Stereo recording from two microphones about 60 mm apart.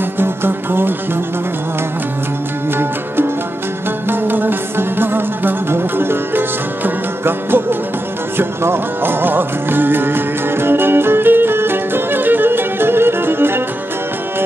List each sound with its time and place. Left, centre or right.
0.2 s music: right
4.1 s music: right